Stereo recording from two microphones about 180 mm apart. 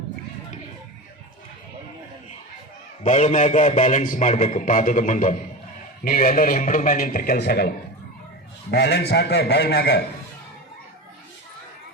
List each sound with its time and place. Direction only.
3.0 s a man's voice: 40° left (ahead or behind); by 7.7 s 60° left (ahead or behind)
8.7 s a man's voice: 65° left (ahead or behind)